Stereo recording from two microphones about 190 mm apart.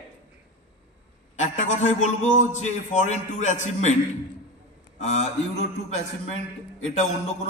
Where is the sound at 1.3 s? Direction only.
40° left (ahead or behind).